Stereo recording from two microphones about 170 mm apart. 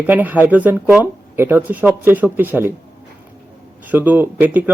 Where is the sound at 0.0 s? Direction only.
10° right (ahead or behind).